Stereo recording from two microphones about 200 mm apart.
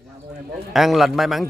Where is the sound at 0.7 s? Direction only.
Centre (ahead or behind).